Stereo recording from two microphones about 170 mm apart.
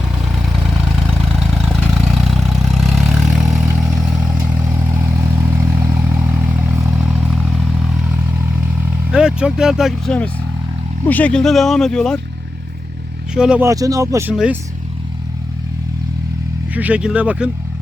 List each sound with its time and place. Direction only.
1.0 s vehicle: 5° left (ahead or behind)
5.1 s vehicle: 15° right (ahead or behind); by 7.7 s centre (ahead or behind)
9.1 s speech: 5° right (ahead or behind)
13.3 s speech: 5° right (ahead or behind)
13.7 s speech: 20° right (ahead or behind)
16.7 s speech: 10° right (ahead or behind)